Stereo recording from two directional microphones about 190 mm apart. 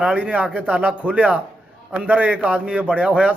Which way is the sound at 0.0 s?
5° right (ahead or behind).